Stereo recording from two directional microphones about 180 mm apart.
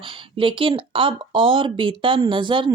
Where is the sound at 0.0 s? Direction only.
30° right (ahead or behind).